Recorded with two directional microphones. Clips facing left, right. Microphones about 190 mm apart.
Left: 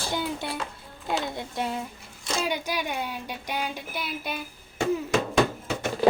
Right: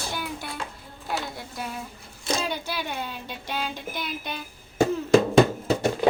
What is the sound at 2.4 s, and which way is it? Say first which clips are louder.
A child's voice: left 2 dB; 15° left (ahead or behind).